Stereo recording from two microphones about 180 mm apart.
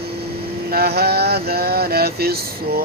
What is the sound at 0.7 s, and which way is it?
Speech, 60° right (ahead or behind).